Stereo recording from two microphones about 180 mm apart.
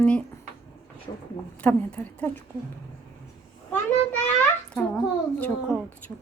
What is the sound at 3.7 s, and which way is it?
A child's voice, 10° left (ahead or behind).